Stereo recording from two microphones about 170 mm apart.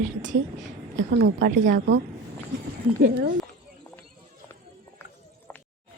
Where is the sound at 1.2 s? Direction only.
75° right (ahead or behind).